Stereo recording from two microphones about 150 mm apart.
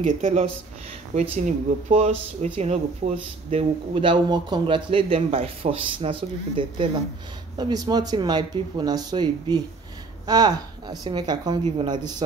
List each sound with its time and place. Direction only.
0.0 s a man's voice: 50° right (ahead or behind); by 11.6 s 30° right (ahead or behind)